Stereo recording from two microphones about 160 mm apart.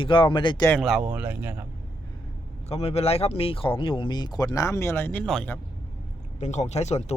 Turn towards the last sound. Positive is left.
turn(degrees=45)  # may be behind; listen again after turning